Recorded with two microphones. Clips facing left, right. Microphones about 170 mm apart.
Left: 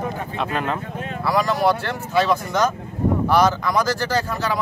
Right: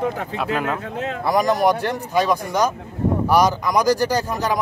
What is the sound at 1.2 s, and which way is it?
Speech, 20° right (ahead or behind).